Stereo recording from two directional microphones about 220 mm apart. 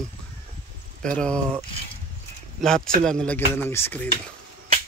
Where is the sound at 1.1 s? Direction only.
5° left (ahead or behind).